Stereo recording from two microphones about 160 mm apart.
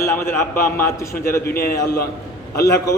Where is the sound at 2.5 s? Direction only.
20° left (ahead or behind).